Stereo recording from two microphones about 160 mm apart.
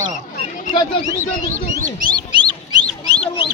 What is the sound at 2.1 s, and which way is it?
Bird, 25° right (ahead or behind).